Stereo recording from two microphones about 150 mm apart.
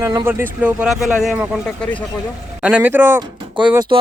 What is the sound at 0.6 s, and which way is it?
Speech, 5° right (ahead or behind).